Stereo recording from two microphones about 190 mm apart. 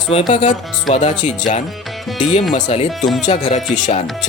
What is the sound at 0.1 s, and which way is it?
Speech, 30° left (ahead or behind).